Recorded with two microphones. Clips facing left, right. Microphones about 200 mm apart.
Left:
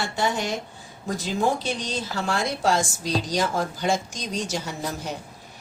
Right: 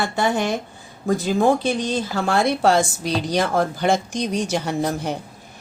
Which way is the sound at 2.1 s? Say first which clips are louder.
Right 6 dB; 60° right (ahead or behind).